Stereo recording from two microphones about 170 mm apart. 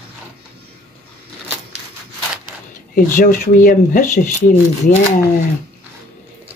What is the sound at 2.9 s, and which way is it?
Speech, 55° left (ahead or behind).